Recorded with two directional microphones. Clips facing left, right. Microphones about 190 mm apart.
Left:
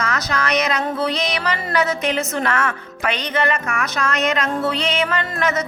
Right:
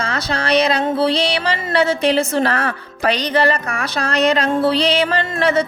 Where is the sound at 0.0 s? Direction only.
30° right (ahead or behind).